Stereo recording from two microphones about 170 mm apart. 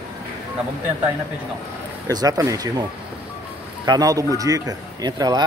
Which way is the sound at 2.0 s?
20° right (ahead or behind).